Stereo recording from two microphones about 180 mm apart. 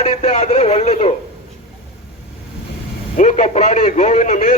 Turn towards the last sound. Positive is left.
turn(degrees=45)  # may be behind; listen again after turning